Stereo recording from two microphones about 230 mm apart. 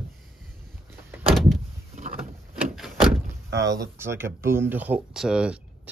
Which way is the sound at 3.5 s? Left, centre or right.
Centre.